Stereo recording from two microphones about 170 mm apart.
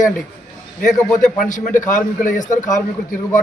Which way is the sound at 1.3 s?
50° left (ahead or behind).